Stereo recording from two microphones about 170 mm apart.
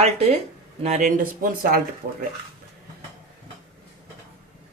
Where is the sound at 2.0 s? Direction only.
65° right (ahead or behind).